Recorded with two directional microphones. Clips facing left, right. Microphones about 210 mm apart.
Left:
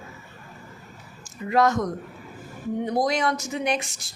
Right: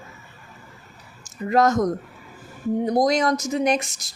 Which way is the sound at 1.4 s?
45° right (ahead or behind).